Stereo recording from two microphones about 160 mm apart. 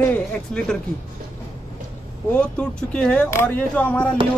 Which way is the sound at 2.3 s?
5° left (ahead or behind).